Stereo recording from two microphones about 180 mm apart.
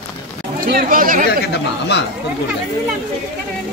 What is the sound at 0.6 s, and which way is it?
Speech, 50° right (ahead or behind).